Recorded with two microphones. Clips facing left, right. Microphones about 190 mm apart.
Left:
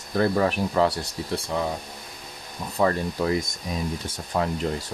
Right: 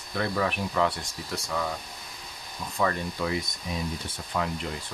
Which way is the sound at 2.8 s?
35° left (ahead or behind).